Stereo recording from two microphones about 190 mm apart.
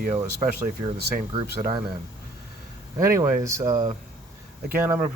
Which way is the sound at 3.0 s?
15° right (ahead or behind).